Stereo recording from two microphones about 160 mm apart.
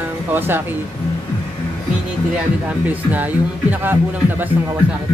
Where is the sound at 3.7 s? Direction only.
10° right (ahead or behind).